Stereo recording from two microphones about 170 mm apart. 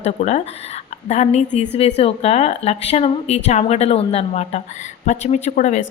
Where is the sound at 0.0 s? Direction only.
40° left (ahead or behind).